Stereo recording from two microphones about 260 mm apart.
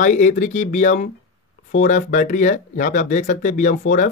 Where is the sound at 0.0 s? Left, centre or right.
Left.